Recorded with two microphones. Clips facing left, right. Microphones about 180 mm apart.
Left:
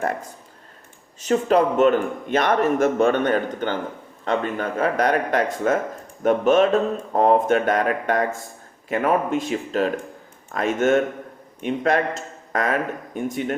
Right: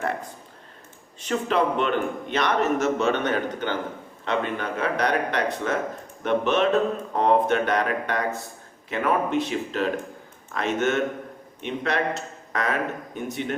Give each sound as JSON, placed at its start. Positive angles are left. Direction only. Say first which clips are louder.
{"t": 1.2, "sound": "a man's voice", "louder": "left 5 dB", "side_deg": 40}